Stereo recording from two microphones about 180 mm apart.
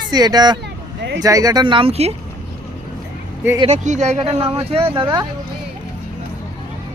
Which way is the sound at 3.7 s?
40° right (ahead or behind).